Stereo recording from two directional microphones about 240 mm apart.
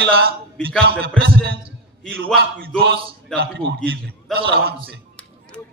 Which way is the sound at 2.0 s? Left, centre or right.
Centre.